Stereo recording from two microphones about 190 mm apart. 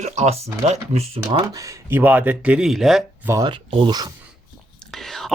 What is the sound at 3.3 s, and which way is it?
Speech, 20° right (ahead or behind).